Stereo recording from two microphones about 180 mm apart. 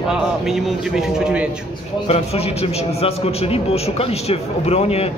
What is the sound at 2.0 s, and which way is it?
A man's voice, 35° left (ahead or behind).